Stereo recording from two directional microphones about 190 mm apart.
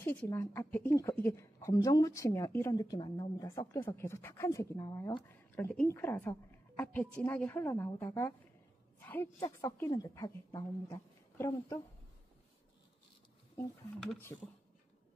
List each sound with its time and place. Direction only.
0.0 s a woman's voice: 10° left (ahead or behind)
9.0 s a sound: 10° left (ahead or behind)
9.4 s a woman's voice: 15° left (ahead or behind)